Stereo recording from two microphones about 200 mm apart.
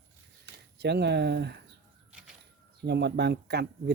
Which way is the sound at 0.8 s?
60° right (ahead or behind).